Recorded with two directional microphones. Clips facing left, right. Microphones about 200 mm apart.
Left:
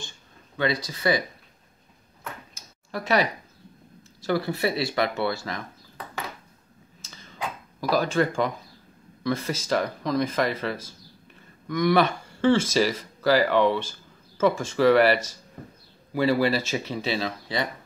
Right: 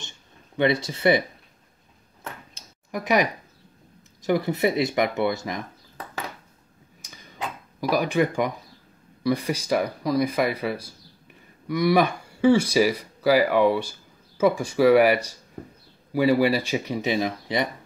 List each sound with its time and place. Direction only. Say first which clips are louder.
0.6 s speech: right 4 dB; 25° right (ahead or behind)
2.9 s speech: right 1 dB; 15° right (ahead or behind)
7.0 s a sound: even; 15° right (ahead or behind)
7.8 s speech: right 1 dB; 15° right (ahead or behind)